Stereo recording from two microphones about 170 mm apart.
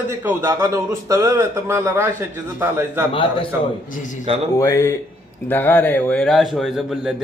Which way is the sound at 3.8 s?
50° left (ahead or behind).